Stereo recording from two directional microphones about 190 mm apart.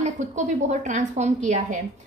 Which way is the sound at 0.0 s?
40° right (ahead or behind).